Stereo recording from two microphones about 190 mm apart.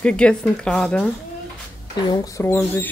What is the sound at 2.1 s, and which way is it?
Speech, 15° left (ahead or behind).